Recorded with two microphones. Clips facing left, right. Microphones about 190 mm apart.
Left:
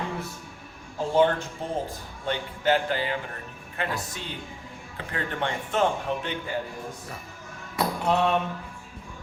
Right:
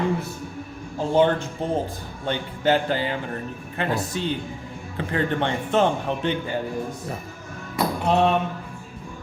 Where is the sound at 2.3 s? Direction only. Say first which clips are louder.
Right 3 dB; 30° right (ahead or behind).